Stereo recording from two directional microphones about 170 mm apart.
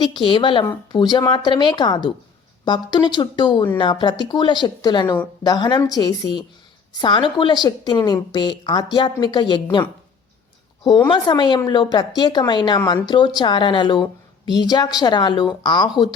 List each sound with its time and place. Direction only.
0.0 s a woman's voice: 30° left (ahead or behind)
11.1 s a woman's voice: 25° left (ahead or behind)